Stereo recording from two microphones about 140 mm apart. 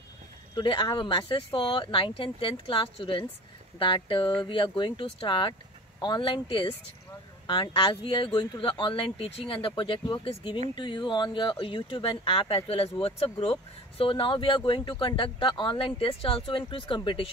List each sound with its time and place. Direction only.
0.6 s speech: 35° left (ahead or behind)